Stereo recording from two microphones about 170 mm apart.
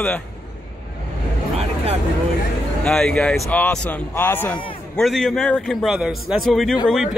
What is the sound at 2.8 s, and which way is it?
Speech, 5° left (ahead or behind).